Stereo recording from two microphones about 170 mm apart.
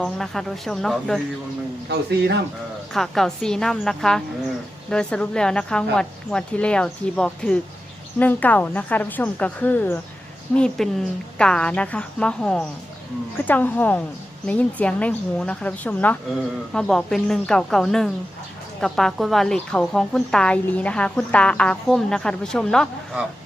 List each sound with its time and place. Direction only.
0.0 s a woman's voice: centre (ahead or behind)
1.9 s speech: 75° right (ahead or behind)
2.9 s a woman's voice: centre (ahead or behind)